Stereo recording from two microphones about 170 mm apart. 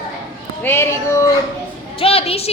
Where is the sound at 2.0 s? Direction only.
35° left (ahead or behind).